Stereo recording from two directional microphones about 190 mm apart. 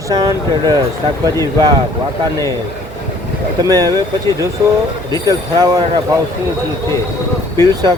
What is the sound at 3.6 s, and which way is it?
Speech, 20° right (ahead or behind).